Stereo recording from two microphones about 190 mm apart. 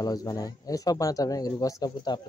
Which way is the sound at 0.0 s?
20° left (ahead or behind).